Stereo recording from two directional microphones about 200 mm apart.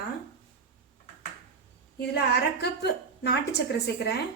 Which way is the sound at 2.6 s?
55° left (ahead or behind).